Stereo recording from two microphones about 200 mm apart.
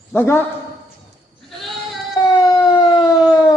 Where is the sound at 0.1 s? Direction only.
10° left (ahead or behind).